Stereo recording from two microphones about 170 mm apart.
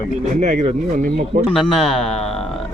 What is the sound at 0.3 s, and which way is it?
Speech, 45° right (ahead or behind).